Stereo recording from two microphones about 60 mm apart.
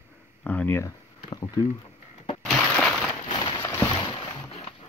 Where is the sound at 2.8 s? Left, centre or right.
Centre.